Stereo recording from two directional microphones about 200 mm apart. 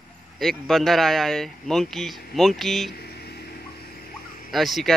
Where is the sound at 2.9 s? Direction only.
50° left (ahead or behind).